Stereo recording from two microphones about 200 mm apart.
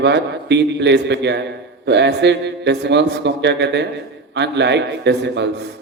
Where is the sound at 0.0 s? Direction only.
60° right (ahead or behind).